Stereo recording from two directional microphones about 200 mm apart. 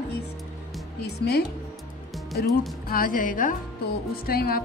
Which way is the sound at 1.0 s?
55° left (ahead or behind).